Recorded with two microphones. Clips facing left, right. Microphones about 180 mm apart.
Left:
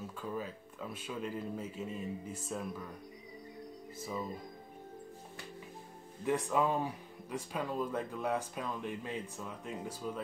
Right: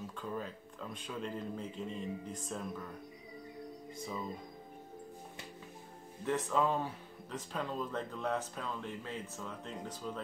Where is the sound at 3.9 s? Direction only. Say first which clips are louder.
Left 2 dB; 5° left (ahead or behind).